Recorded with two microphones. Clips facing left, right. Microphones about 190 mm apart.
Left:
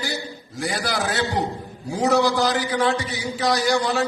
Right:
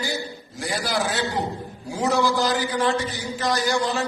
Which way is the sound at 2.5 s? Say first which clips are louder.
Left 1 dB; 70° left (ahead or behind).